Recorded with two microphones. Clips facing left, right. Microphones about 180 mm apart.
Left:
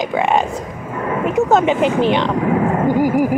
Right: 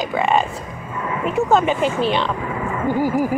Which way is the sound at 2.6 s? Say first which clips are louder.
Left 7 dB; 65° left (ahead or behind).